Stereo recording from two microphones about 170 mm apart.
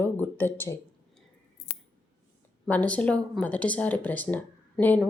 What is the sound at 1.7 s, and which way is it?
Scissors, 65° left (ahead or behind).